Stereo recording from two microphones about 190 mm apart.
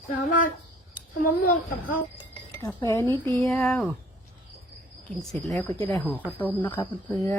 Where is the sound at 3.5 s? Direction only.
5° left (ahead or behind).